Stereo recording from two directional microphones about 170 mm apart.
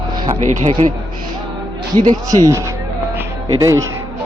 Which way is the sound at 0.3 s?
45° right (ahead or behind).